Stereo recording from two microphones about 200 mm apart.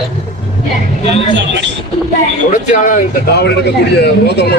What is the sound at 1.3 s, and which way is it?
Speech, 60° right (ahead or behind).